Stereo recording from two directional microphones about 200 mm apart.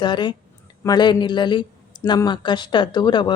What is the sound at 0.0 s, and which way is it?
Speech, 20° left (ahead or behind).